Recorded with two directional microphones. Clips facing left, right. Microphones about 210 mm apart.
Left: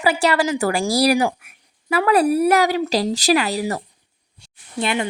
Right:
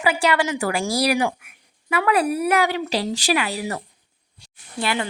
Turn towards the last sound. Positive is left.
turn(degrees=20)  # may be behind; listen again after turning